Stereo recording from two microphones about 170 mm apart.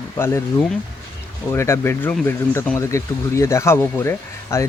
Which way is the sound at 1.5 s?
15° left (ahead or behind).